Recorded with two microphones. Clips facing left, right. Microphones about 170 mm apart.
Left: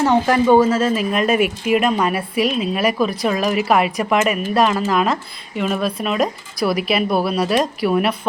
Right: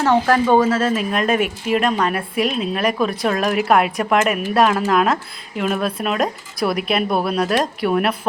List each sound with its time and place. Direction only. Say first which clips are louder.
0.0 s speech: left 1 dB; 15° left (ahead or behind)
0.8 s speech: left 1 dB; centre (ahead or behind)